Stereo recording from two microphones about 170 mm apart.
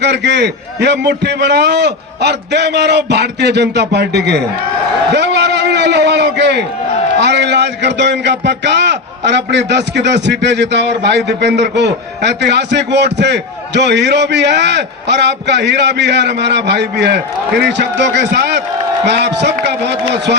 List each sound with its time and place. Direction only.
0.0 s a man's voice: 90° right
5.1 s a sound: 90° right
7.2 s a man's voice: 90° right